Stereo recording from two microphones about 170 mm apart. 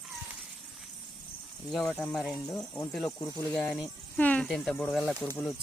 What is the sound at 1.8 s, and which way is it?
Speech, 10° left (ahead or behind).